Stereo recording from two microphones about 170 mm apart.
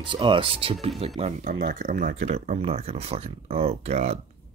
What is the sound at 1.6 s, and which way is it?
Speech, 65° right (ahead or behind).